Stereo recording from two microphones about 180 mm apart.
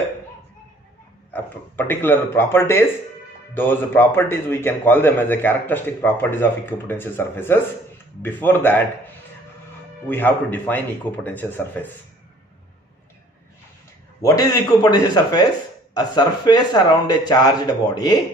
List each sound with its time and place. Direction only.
1.3 s a man's voice: 10° left (ahead or behind)
14.2 s speech: 20° left (ahead or behind)